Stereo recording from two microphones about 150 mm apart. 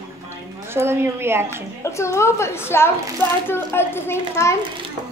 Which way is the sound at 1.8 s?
20° left (ahead or behind).